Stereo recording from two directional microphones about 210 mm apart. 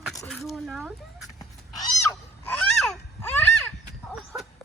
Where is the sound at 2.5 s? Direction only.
5° left (ahead or behind).